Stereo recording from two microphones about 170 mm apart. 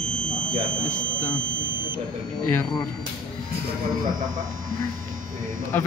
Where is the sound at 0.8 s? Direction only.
10° left (ahead or behind).